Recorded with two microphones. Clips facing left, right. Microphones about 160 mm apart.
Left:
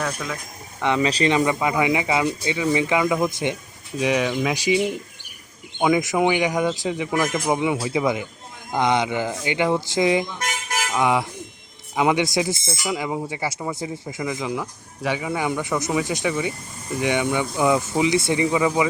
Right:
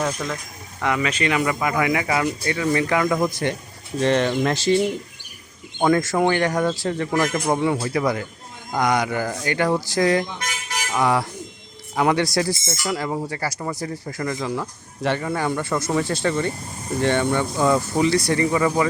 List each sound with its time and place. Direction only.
0.1 s speech: 5° left (ahead or behind)
0.8 s speech: 25° left (ahead or behind)
5.8 s speech: 15° left (ahead or behind)
10.3 s a sound: 45° left (ahead or behind)
11.0 s speech: 20° left (ahead or behind)